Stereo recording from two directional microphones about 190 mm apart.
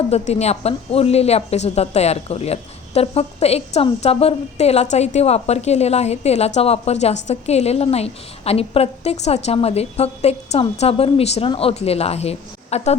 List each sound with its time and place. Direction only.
0.1 s speech: 35° left (ahead or behind)